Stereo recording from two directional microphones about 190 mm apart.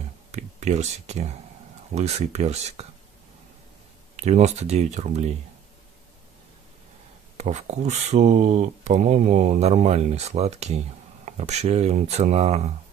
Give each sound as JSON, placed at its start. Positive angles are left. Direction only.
{"t": 0.3, "sound": "a sound", "side_deg": -35}
{"t": 2.0, "sound": "speech", "side_deg": -35}
{"t": 4.2, "sound": "speech", "side_deg": -35}
{"t": 7.3, "sound": "speech", "side_deg": -35}